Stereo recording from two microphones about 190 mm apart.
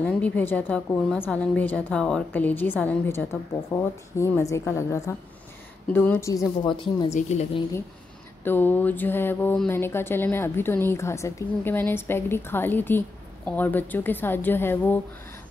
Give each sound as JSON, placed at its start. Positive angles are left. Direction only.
{"t": 0.0, "sound": "speech", "side_deg": 10}
{"t": 7.2, "sound": "a woman's voice", "side_deg": 35}
{"t": 8.5, "sound": "speech", "side_deg": 10}